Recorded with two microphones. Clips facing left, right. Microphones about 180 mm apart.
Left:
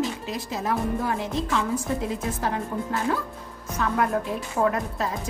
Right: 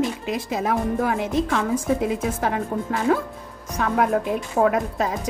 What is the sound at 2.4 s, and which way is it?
Speech, 60° right (ahead or behind).